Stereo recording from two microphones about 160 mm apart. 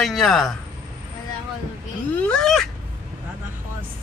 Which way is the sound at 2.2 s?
5° left (ahead or behind).